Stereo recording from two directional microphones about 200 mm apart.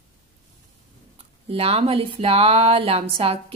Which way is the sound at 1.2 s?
30° right (ahead or behind).